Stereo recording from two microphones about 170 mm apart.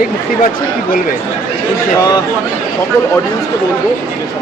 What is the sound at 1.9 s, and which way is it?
Speech, 20° left (ahead or behind).